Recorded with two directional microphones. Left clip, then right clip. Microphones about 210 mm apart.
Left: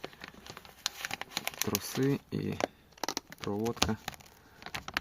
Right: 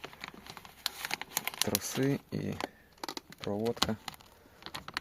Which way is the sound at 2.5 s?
55° left (ahead or behind).